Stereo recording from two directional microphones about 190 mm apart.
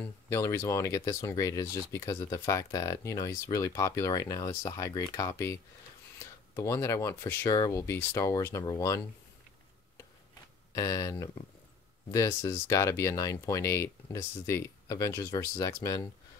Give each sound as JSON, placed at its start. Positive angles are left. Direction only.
{"t": 0.0, "sound": "speech", "side_deg": 15}
{"t": 10.7, "sound": "speech", "side_deg": 20}